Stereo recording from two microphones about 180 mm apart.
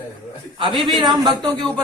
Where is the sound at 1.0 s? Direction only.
25° right (ahead or behind).